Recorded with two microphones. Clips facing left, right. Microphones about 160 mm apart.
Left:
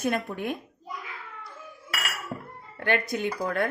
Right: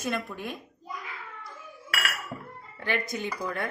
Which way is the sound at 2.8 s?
60° left (ahead or behind).